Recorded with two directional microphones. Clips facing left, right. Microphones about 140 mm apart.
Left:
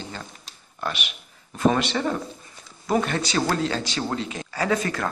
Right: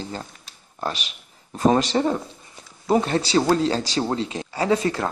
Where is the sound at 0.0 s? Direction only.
35° right (ahead or behind).